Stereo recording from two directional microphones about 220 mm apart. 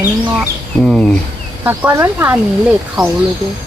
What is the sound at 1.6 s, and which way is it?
Speech, 10° right (ahead or behind).